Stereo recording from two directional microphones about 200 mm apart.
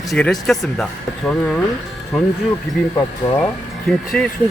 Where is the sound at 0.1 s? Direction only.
Centre (ahead or behind).